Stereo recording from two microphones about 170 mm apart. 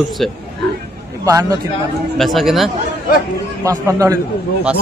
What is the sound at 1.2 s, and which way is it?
Speech, 20° right (ahead or behind).